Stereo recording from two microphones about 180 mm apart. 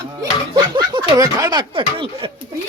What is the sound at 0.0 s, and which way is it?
Speech, 20° right (ahead or behind).